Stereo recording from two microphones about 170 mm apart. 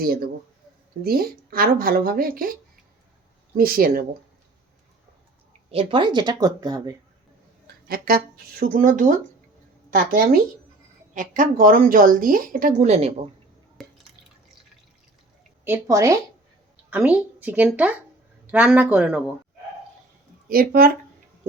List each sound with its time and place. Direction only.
0.0 s speech: 60° right (ahead or behind)
5.7 s speech: 30° right (ahead or behind)
7.9 s speech: 65° right (ahead or behind); by 13.1 s 40° right (ahead or behind)
13.8 s drip: centre (ahead or behind)
15.6 s speech: 15° right (ahead or behind)
20.5 s speech: 60° right (ahead or behind)